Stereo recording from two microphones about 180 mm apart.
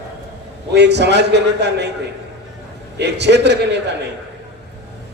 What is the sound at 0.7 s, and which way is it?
A man's voice, 70° right (ahead or behind).